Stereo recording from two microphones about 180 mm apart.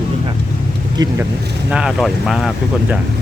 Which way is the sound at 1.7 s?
5° right (ahead or behind).